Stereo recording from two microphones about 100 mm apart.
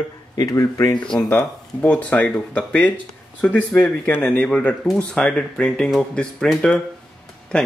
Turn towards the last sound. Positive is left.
turn(degrees=10)  # may be behind; listen again after turning